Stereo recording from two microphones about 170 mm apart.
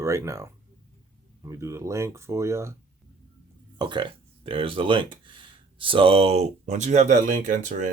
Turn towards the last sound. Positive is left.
turn(degrees=-50)  # may be behind; listen again after turning